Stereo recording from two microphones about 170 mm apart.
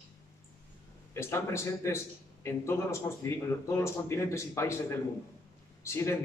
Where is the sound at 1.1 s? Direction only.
15° left (ahead or behind).